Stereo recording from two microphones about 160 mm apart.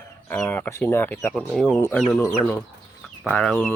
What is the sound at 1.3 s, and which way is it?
Speech, 5° left (ahead or behind).